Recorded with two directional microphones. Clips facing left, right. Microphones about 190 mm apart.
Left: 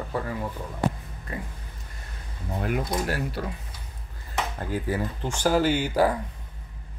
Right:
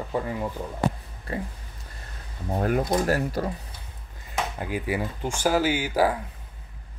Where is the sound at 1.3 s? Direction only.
30° right (ahead or behind).